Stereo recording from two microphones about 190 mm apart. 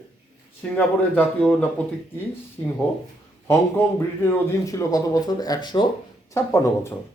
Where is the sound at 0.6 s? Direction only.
10° left (ahead or behind).